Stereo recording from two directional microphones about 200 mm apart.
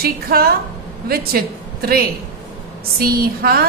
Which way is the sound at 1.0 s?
50° right (ahead or behind).